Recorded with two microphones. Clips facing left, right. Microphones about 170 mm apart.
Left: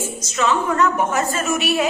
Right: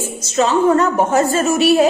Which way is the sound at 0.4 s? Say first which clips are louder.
Right 5 dB; 30° right (ahead or behind).